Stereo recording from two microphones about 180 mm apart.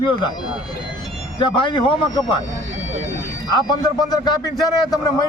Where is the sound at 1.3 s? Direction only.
25° left (ahead or behind).